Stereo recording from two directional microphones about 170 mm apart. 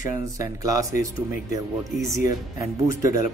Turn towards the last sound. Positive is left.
turn(degrees=-15)  # may be behind; listen again after turning